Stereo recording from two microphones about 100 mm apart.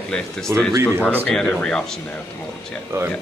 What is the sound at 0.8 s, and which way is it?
Speech, 15° right (ahead or behind).